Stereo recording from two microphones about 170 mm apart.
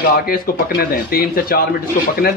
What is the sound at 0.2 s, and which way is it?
Speech, 60° left (ahead or behind).